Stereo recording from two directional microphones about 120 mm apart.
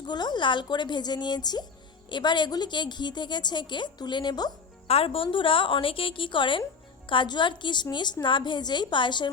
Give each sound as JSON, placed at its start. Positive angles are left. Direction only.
{"t": 0.0, "sound": "a woman's voice", "side_deg": 35}
{"t": 4.9, "sound": "a woman's voice", "side_deg": 55}